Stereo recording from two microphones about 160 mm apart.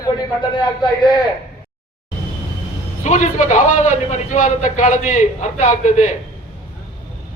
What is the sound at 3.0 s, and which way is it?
A man's voice, 50° left (ahead or behind).